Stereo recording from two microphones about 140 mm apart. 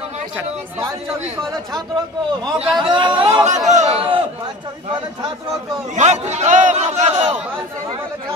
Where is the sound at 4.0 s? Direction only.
40° right (ahead or behind).